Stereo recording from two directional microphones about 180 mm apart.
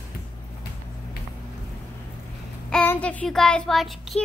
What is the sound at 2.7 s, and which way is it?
Child singing, 10° left (ahead or behind).